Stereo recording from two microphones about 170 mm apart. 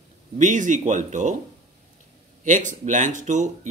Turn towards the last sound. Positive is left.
turn(degrees=-45)  # may be behind; listen again after turning